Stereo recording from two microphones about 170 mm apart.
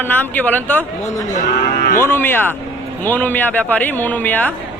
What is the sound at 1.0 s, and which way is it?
Speech, 45° left (ahead or behind).